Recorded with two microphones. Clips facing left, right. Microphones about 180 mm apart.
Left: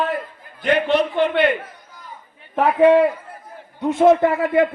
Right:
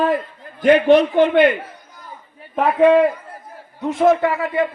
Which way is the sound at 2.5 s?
5° left (ahead or behind).